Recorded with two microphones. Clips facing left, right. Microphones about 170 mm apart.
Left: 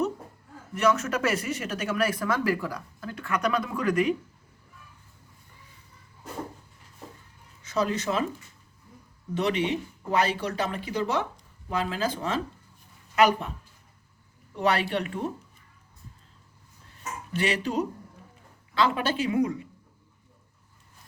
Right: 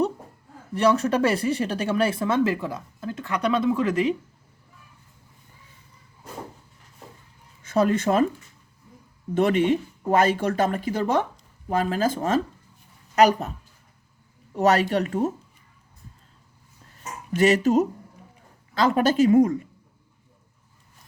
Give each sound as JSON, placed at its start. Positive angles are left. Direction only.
{"t": 0.7, "sound": "speech", "side_deg": -35}
{"t": 7.6, "sound": "speech", "side_deg": -55}
{"t": 9.3, "sound": "speech", "side_deg": -50}
{"t": 14.5, "sound": "speech", "side_deg": -40}
{"t": 17.3, "sound": "speech", "side_deg": -45}